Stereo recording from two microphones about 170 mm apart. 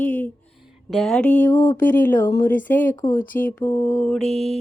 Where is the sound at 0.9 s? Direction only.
5° left (ahead or behind).